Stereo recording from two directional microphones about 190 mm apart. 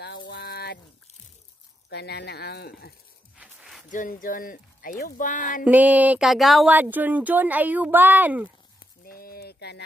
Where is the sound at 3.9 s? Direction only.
45° left (ahead or behind).